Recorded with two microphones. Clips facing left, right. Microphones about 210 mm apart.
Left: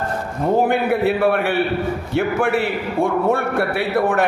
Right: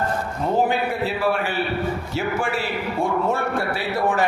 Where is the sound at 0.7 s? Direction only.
60° left (ahead or behind).